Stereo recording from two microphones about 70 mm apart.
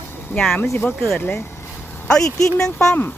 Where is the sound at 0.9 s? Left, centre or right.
Centre.